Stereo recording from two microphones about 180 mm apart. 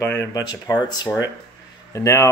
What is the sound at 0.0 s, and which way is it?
Speech, 15° left (ahead or behind).